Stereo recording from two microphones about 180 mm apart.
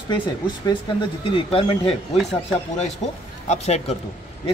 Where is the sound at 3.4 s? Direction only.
40° left (ahead or behind).